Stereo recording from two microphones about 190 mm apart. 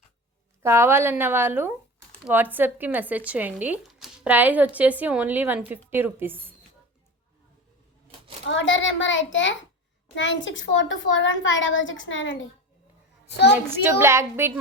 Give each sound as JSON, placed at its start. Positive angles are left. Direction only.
{"t": 0.6, "sound": "speech", "side_deg": -15}
{"t": 8.4, "sound": "a child's voice", "side_deg": 80}
{"t": 13.8, "sound": "speech", "side_deg": -15}